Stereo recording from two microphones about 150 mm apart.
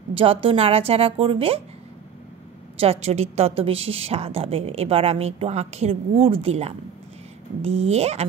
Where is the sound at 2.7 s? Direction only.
45° right (ahead or behind).